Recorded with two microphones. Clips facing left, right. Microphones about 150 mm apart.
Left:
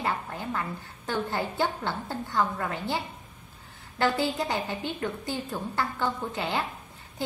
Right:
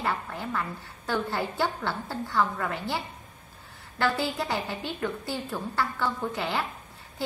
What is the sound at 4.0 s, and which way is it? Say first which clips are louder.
A woman's voice: left 1 dB; 20° left (ahead or behind).